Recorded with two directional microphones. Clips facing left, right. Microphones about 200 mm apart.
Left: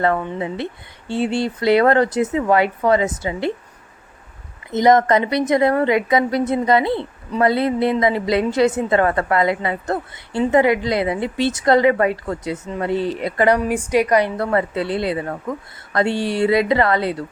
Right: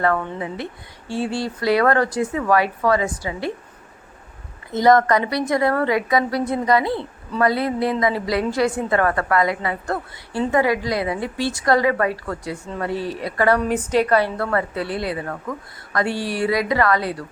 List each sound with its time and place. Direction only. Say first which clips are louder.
0.0 s a woman's voice: left 2 dB; 20° left (ahead or behind)
4.7 s a woman's voice: left 1 dB; 20° left (ahead or behind)
13.6 s a woman's voice: left 1 dB; 10° left (ahead or behind)